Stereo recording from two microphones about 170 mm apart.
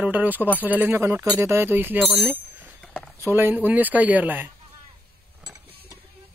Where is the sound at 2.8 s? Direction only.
5° left (ahead or behind).